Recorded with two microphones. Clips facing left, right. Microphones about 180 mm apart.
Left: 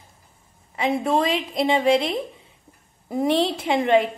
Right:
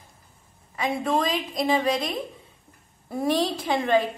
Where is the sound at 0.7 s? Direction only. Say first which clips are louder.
Left 3 dB; 25° left (ahead or behind).